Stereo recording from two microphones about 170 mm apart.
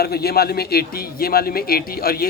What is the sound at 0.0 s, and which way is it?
A man's voice, 65° left (ahead or behind).